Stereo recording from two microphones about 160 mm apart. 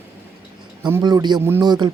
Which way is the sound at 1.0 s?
25° right (ahead or behind).